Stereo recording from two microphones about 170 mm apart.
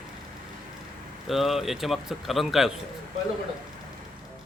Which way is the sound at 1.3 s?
Centre (ahead or behind).